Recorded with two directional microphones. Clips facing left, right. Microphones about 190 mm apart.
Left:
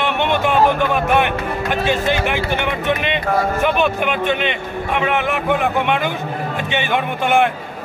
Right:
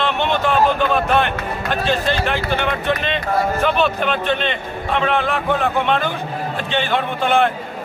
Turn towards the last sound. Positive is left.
turn(degrees=15)  # may be behind; listen again after turning